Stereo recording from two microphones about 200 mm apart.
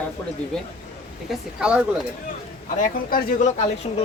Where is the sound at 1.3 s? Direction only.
5° right (ahead or behind).